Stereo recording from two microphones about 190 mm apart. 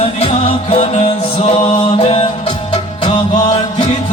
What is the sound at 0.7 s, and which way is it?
Music, 35° left (ahead or behind).